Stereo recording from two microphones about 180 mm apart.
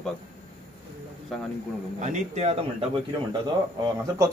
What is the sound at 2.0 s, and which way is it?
Speech, 40° right (ahead or behind).